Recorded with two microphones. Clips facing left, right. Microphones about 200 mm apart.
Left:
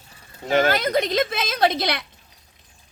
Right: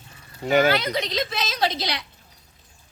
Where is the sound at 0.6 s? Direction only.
45° left (ahead or behind).